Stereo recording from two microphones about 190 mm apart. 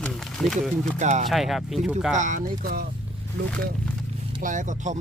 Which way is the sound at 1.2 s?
Centre (ahead or behind).